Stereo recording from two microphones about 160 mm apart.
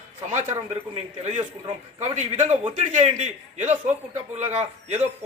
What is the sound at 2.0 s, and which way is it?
A man's voice, 45° right (ahead or behind).